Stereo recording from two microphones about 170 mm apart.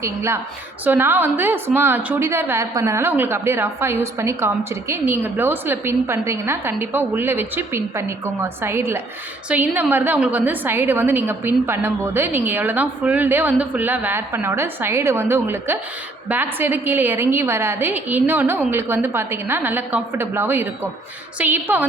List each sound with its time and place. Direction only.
0.0 s a woman's voice: 15° right (ahead or behind)